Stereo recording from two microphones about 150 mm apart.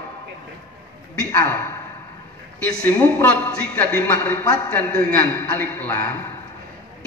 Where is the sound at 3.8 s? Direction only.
10° left (ahead or behind).